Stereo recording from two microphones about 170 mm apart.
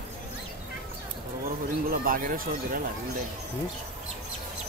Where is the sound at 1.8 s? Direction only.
55° right (ahead or behind).